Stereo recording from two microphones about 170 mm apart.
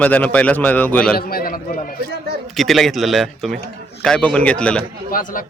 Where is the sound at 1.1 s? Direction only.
60° left (ahead or behind).